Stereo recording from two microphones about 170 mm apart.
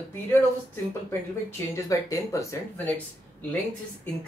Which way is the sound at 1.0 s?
15° left (ahead or behind).